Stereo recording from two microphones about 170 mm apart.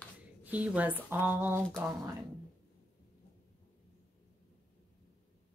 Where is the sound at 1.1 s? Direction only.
10° right (ahead or behind).